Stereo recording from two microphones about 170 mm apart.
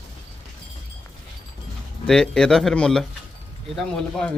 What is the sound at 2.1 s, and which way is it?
Speech, 5° left (ahead or behind).